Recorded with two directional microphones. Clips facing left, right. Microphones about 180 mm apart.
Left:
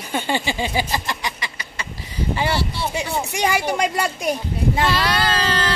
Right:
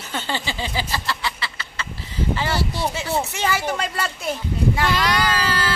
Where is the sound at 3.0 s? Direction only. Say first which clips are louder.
Left 4 dB; 15° left (ahead or behind).